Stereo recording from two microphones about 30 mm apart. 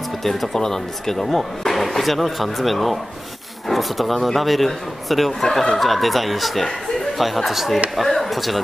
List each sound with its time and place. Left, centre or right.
0.2 s speech: centre
1.1 s speech: centre